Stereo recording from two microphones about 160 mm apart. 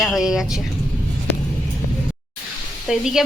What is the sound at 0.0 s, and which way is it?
Speech, centre (ahead or behind).